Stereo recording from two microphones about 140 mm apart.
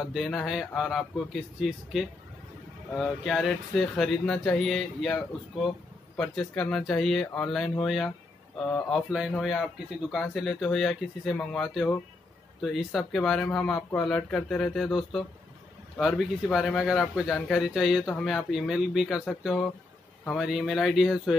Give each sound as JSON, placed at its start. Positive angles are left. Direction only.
{"t": 0.0, "sound": "speech", "side_deg": 0}